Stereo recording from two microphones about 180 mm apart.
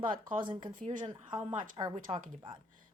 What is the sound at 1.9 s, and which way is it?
Speech, 35° right (ahead or behind).